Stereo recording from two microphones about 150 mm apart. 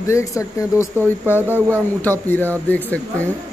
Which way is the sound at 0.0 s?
20° left (ahead or behind).